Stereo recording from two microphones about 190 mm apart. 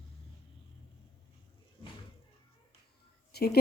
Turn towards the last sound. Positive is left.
turn(degrees=55)  # may be behind; listen again after turning